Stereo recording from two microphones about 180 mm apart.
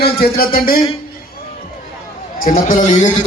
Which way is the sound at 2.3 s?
50° left (ahead or behind).